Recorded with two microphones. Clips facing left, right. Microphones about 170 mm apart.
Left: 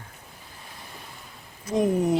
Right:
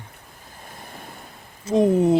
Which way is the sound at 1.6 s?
30° right (ahead or behind).